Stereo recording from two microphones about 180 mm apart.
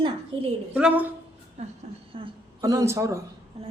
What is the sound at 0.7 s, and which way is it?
Speech, 10° right (ahead or behind).